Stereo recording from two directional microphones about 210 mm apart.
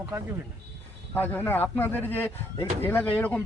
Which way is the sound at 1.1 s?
10° left (ahead or behind).